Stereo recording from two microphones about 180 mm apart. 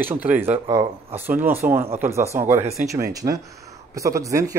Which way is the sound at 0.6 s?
30° right (ahead or behind).